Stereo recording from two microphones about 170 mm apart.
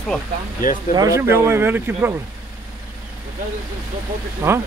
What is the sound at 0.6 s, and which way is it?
Speech, 55° left (ahead or behind).